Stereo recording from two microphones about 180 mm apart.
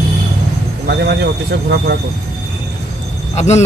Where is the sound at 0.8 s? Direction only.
65° right (ahead or behind).